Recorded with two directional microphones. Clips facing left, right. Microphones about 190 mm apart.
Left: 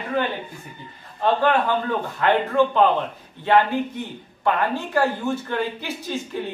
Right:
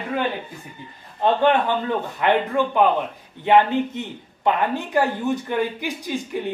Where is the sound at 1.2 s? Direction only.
20° right (ahead or behind).